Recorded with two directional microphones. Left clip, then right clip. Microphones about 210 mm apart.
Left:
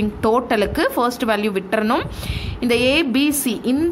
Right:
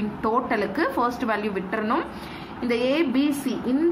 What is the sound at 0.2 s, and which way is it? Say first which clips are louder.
A woman's voice: left 6 dB; 50° left (ahead or behind).